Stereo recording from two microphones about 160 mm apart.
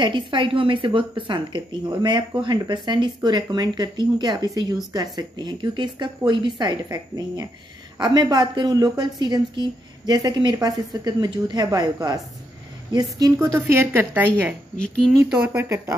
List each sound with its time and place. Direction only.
0.0 s a woman's voice: 30° right (ahead or behind)
13.2 s a woman's voice: 20° right (ahead or behind)
14.8 s speech: centre (ahead or behind)